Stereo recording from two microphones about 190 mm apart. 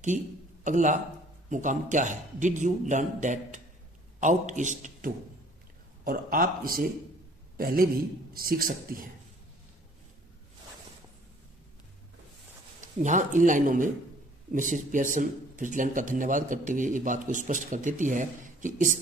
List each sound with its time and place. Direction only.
0.7 s a man's voice: 40° right (ahead or behind)
13.0 s speech: 40° right (ahead or behind)